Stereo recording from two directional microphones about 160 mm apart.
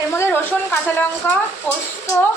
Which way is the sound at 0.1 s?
15° left (ahead or behind).